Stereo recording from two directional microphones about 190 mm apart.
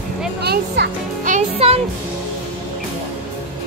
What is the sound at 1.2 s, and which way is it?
Music, 35° right (ahead or behind).